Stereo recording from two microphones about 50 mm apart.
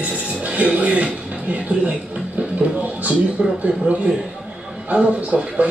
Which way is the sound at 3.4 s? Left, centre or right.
Centre.